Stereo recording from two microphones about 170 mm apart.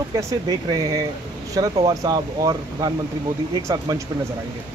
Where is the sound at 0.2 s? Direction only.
20° right (ahead or behind).